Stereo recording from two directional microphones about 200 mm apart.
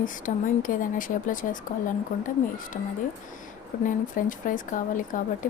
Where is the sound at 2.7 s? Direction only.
40° left (ahead or behind).